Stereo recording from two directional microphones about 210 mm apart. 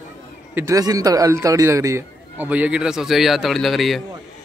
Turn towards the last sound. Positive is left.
turn(degrees=0)  # may be behind; listen again after turning